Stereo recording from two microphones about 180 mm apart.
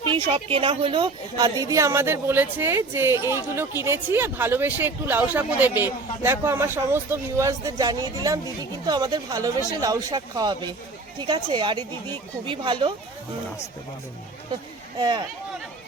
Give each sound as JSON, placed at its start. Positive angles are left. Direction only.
{"t": 0.1, "sound": "a woman's voice", "side_deg": -30}
{"t": 14.9, "sound": "speech", "side_deg": -25}